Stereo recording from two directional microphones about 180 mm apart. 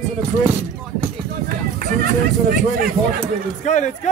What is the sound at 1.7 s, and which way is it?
Speech, 50° right (ahead or behind).